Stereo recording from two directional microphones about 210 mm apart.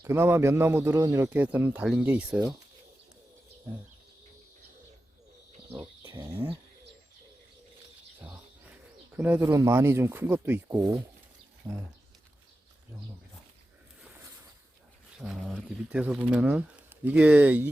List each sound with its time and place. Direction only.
0.0 s speech: 10° right (ahead or behind)
5.8 s a sound: 25° right (ahead or behind)
6.1 s speech: 10° right (ahead or behind)
9.1 s speech: 10° right (ahead or behind)
15.2 s speech: 5° right (ahead or behind)